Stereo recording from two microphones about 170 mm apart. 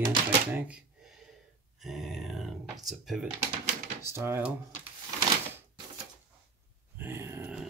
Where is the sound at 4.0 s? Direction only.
15° right (ahead or behind).